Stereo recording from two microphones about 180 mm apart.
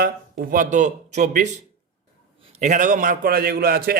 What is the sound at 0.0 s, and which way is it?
Speech, 50° right (ahead or behind).